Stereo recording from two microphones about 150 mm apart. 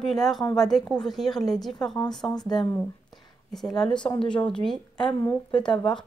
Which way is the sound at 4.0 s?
35° left (ahead or behind).